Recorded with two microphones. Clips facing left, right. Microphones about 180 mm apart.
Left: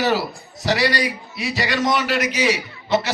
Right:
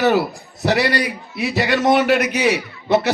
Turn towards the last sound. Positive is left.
turn(degrees=-60)  # may be behind; listen again after turning